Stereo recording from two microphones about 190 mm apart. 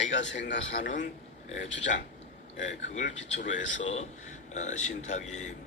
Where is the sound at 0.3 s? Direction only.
70° left (ahead or behind).